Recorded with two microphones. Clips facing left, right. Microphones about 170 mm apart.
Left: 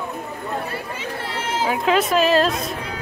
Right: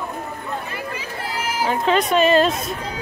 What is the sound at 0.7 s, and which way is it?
Chatter, 30° left (ahead or behind).